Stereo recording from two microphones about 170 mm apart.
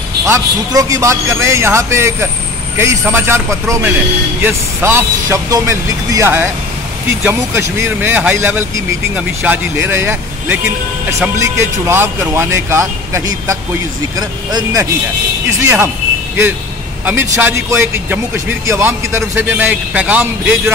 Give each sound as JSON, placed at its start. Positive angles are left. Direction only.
{"t": 0.2, "sound": "a man's voice", "side_deg": -20}
{"t": 17.0, "sound": "a man's voice", "side_deg": -15}